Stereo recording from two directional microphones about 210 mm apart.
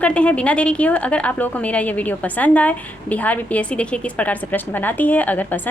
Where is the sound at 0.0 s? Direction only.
5° left (ahead or behind).